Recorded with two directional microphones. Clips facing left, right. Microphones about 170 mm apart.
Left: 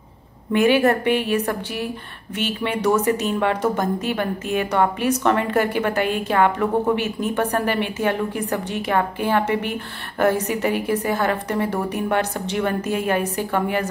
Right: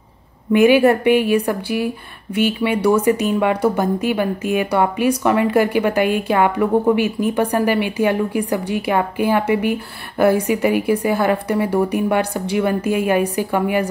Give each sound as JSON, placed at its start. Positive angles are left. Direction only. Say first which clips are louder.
{"t": 0.5, "sound": "speech", "louder": "right 5 dB", "side_deg": -15}